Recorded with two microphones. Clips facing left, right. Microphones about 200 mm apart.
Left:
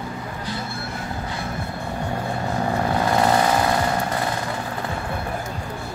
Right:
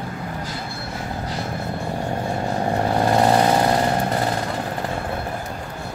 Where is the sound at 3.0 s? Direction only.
35° right (ahead or behind).